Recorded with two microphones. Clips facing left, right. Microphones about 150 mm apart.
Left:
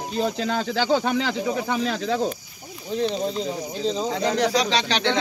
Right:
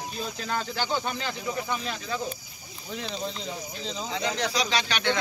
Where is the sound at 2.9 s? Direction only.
35° left (ahead or behind).